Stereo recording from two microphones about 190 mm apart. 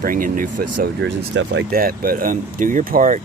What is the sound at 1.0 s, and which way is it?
Speech, 65° right (ahead or behind).